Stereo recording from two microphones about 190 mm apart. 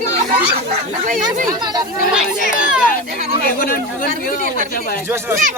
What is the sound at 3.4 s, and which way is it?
Speech, 50° left (ahead or behind).